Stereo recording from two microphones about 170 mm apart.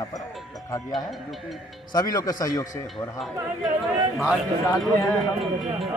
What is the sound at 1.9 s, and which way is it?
Speech, 20° left (ahead or behind).